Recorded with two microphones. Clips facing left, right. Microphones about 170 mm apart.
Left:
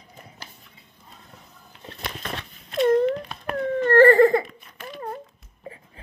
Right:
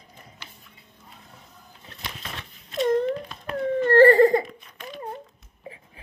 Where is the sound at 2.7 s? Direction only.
65° left (ahead or behind).